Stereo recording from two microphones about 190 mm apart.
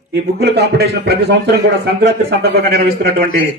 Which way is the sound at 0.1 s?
60° right (ahead or behind).